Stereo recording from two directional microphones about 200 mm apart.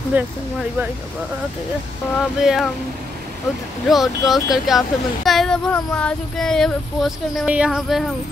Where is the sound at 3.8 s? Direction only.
Centre (ahead or behind).